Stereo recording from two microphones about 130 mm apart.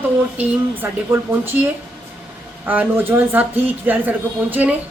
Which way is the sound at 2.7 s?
15° right (ahead or behind).